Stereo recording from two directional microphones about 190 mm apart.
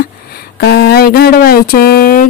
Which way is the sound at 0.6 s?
60° left (ahead or behind).